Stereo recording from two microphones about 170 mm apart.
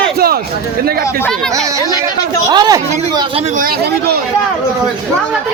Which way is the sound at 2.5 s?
25° right (ahead or behind).